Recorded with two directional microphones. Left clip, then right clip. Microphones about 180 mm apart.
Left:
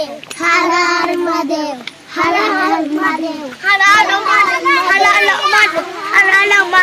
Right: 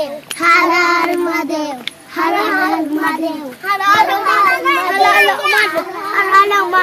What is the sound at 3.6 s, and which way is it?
Speech, 45° right (ahead or behind).